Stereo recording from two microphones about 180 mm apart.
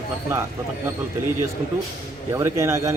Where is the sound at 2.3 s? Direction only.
15° right (ahead or behind).